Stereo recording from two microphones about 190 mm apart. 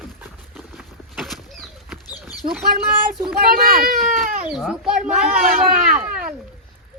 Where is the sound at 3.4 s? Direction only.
50° right (ahead or behind).